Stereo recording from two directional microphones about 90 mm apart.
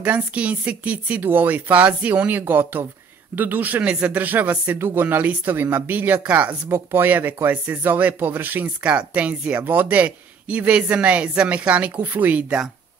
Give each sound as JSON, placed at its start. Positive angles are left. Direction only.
{"t": 0.0, "sound": "speech", "side_deg": -15}